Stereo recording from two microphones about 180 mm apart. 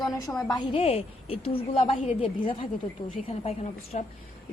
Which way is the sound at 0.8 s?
35° left (ahead or behind).